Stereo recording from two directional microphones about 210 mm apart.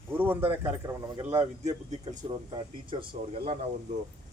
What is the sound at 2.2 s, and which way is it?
Speech, 25° right (ahead or behind).